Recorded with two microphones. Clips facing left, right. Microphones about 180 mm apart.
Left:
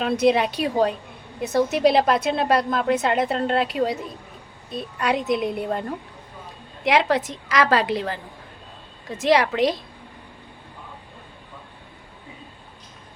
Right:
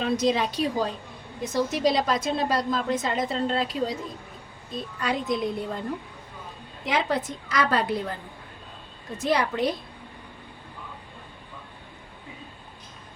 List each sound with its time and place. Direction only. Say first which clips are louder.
0.0 s a woman's voice: left 5 dB; 65° left (ahead or behind)
6.8 s a woman's voice: left 6 dB; 75° left (ahead or behind)